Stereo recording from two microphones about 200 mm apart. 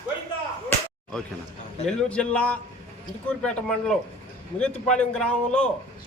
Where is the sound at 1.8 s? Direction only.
5° left (ahead or behind).